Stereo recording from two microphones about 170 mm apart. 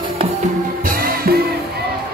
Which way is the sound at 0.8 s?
60° right (ahead or behind).